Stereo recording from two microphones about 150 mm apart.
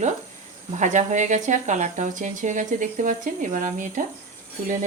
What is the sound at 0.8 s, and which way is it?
Speech, 55° right (ahead or behind).